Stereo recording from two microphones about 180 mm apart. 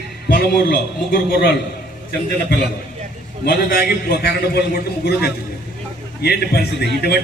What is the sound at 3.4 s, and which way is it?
A man's voice, 60° left (ahead or behind).